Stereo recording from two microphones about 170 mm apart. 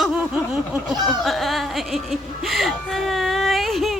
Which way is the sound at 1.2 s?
Centre (ahead or behind).